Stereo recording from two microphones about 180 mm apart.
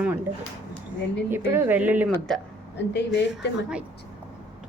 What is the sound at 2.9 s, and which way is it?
Speech, 70° left (ahead or behind).